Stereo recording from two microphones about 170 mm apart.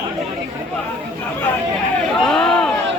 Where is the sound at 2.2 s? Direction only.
5° left (ahead or behind).